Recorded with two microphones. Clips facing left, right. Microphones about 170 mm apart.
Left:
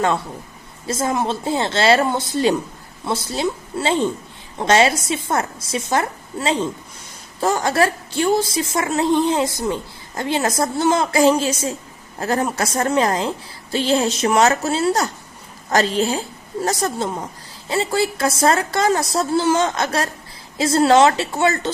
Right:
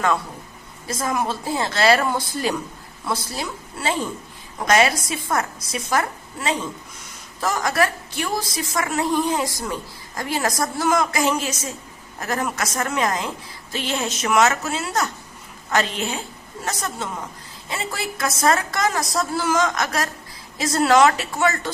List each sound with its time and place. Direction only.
0.9 s a woman's voice: 25° left (ahead or behind)